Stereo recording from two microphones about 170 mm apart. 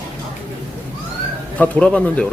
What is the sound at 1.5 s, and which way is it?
Speech, 5° left (ahead or behind).